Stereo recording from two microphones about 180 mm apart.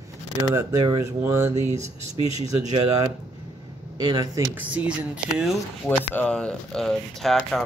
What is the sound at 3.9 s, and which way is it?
Speech, 20° right (ahead or behind).